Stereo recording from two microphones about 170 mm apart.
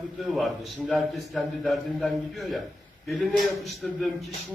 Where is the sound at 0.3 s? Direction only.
Centre (ahead or behind).